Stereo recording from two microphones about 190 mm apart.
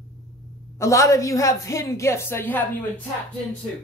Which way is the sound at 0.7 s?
15° left (ahead or behind).